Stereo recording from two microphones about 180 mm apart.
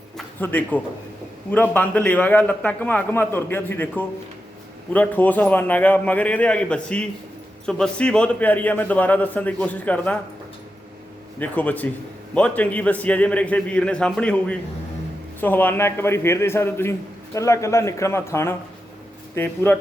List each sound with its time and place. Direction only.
0.2 s a man's voice: 10° left (ahead or behind)
11.3 s a man's voice: 10° left (ahead or behind)